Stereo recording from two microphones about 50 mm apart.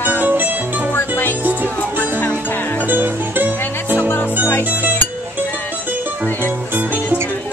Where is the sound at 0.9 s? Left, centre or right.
Left.